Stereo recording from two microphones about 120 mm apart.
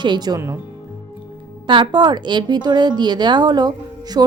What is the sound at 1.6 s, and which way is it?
A woman's voice, 40° right (ahead or behind).